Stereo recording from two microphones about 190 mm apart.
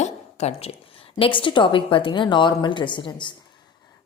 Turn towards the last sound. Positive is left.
turn(degrees=25)  # may be behind; listen again after turning